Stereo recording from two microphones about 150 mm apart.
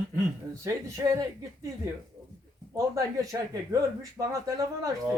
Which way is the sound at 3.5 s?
20° right (ahead or behind).